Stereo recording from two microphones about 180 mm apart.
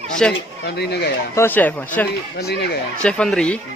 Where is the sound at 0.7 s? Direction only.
65° left (ahead or behind).